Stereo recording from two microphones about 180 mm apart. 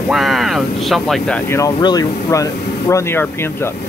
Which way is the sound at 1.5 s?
20° left (ahead or behind).